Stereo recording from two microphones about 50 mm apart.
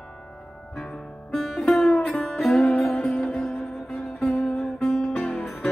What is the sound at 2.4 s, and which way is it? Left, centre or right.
Music, centre.